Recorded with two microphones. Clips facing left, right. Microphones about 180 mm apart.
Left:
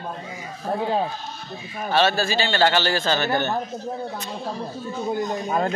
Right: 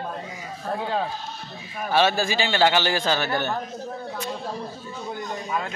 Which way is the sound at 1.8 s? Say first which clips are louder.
Left 1 dB; 15° right (ahead or behind).